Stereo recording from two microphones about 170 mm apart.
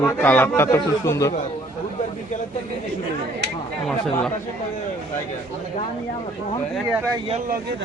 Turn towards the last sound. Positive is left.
turn(degrees=-15)  # may be behind; listen again after turning